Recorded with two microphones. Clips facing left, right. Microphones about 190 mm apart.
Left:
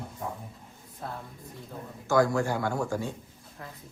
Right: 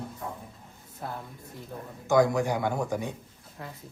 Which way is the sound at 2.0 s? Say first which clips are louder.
Right 1 dB; 20° right (ahead or behind).